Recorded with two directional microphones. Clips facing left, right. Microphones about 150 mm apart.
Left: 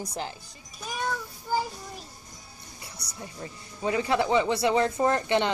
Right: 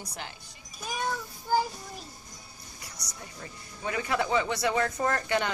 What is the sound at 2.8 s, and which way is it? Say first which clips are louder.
A woman's voice: left 4 dB; 30° left (ahead or behind).